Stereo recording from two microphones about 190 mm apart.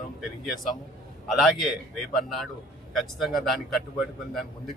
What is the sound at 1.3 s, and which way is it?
A man's voice, centre (ahead or behind).